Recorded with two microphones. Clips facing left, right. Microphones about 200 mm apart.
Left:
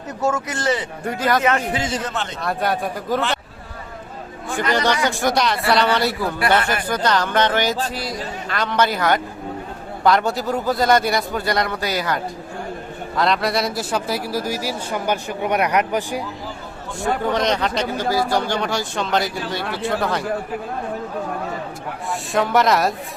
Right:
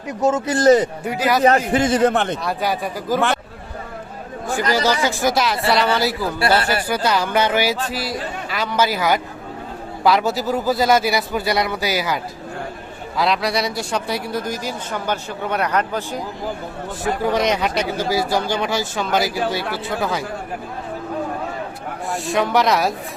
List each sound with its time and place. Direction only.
0.1 s speech: 20° right (ahead or behind)
0.4 s speech: 40° right (ahead or behind)
1.0 s speech: 5° right (ahead or behind)
1.4 s speech: 35° right (ahead or behind)
1.7 s speech: 55° right (ahead or behind)
2.4 s speech: centre (ahead or behind)
4.7 s speech: 5° right (ahead or behind)
6.4 s speech: 35° right (ahead or behind)
6.8 s a man's voice: 10° right (ahead or behind); by 16.2 s 15° left (ahead or behind)
17.3 s speech: 10° right (ahead or behind)
22.1 s speech: centre (ahead or behind)